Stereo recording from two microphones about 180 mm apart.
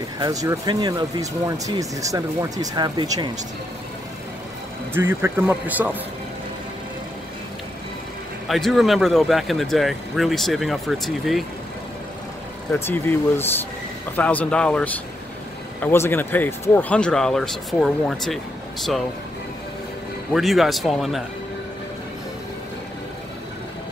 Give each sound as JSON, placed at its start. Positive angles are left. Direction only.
{"t": 0.2, "sound": "speech", "side_deg": -20}
{"t": 4.9, "sound": "speech", "side_deg": -15}
{"t": 8.5, "sound": "speech", "side_deg": 0}
{"t": 12.7, "sound": "speech", "side_deg": 10}
{"t": 20.3, "sound": "speech", "side_deg": 0}